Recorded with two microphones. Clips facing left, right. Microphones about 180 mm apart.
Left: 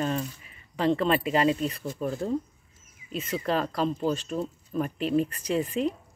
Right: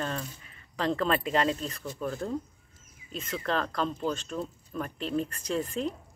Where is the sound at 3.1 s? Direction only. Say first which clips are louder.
Left 3 dB; 10° left (ahead or behind).